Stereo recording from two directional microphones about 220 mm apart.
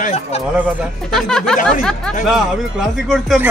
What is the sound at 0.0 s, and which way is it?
Speech, 30° left (ahead or behind).